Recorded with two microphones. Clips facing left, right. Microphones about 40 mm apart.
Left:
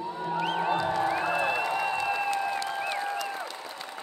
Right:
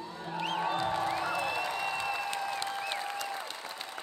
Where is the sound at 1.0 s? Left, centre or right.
Left.